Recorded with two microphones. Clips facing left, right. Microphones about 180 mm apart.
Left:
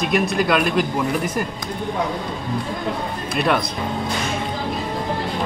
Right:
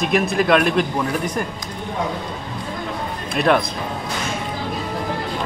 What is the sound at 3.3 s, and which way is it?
Speech, centre (ahead or behind).